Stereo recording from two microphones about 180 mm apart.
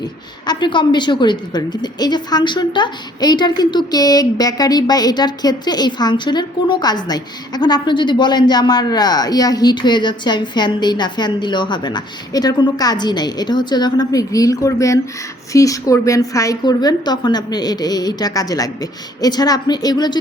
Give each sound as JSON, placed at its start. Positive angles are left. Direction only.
{"t": 0.0, "sound": "a woman's voice", "side_deg": 25}